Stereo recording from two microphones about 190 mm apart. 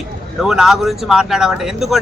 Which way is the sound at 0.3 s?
Centre (ahead or behind).